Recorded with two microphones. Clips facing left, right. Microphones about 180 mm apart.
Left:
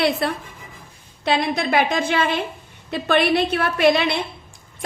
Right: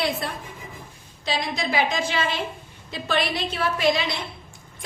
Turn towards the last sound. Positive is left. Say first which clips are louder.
# left 5 dB
turn(degrees=60)  # may be behind; listen again after turning